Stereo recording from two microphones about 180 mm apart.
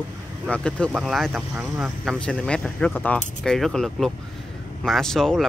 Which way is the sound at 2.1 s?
5° left (ahead or behind).